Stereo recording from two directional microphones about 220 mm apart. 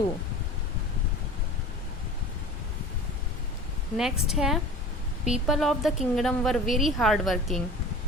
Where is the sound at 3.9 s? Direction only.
Centre (ahead or behind).